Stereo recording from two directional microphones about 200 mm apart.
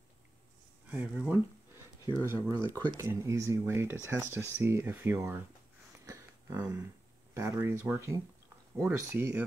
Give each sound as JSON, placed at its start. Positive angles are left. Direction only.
{"t": 0.9, "sound": "speech", "side_deg": -5}
{"t": 2.3, "sound": "speech", "side_deg": 10}
{"t": 2.9, "sound": "speech", "side_deg": -15}
{"t": 6.0, "sound": "a sound", "side_deg": -15}
{"t": 7.3, "sound": "speech", "side_deg": -15}